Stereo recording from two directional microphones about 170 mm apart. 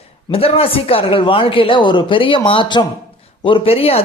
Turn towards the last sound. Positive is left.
turn(degrees=35)  # may be behind; listen again after turning